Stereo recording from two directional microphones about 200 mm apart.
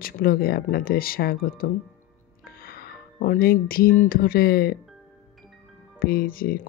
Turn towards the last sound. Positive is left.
turn(degrees=45)  # may be behind; listen again after turning